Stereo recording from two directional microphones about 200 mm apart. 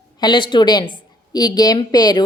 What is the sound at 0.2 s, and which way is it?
A woman's voice, 25° left (ahead or behind).